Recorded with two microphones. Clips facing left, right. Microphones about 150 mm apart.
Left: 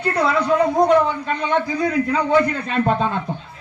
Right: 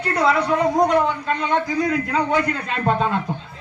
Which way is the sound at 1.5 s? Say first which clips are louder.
Left 1 dB; 30° left (ahead or behind).